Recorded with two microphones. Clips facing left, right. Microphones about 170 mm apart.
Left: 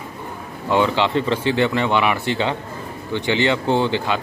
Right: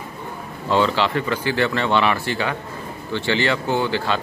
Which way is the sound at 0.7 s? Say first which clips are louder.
Left 1 dB; 20° left (ahead or behind).